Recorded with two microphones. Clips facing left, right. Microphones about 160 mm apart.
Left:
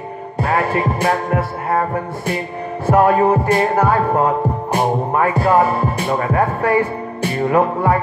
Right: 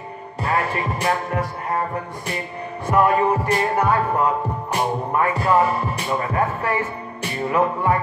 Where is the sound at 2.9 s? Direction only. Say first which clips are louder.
Left 4 dB; 50° left (ahead or behind).